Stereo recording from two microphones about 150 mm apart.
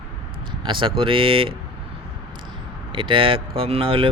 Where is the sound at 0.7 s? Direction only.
35° right (ahead or behind).